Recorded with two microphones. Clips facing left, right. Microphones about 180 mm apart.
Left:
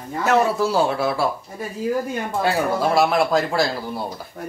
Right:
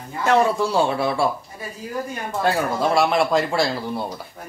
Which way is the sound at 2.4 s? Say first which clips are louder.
Even; centre (ahead or behind).